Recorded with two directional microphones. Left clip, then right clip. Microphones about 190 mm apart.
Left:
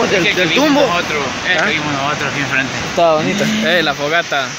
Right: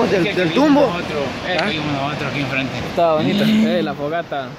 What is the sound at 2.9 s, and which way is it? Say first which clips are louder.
Speech: left 3 dB; 10° left (ahead or behind).